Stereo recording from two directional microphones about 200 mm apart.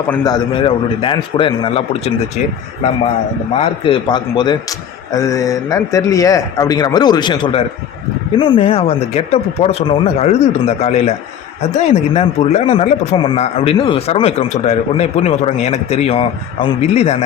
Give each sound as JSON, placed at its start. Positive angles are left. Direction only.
{"t": 0.2, "sound": "a man's voice", "side_deg": 20}
{"t": 3.6, "sound": "a man's voice", "side_deg": 25}